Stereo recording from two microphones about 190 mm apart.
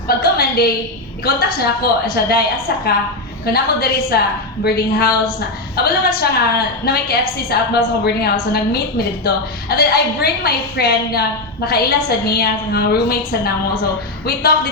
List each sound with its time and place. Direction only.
0.1 s a sound: 50° left (ahead or behind)
1.2 s a woman's voice: 50° left (ahead or behind)
3.4 s a woman's voice: 55° left (ahead or behind)